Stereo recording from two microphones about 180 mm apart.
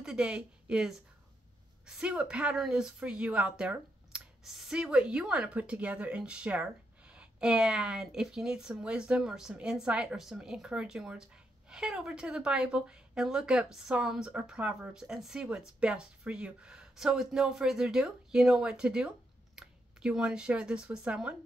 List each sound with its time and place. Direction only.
0.0 s a woman's voice: 5° right (ahead or behind)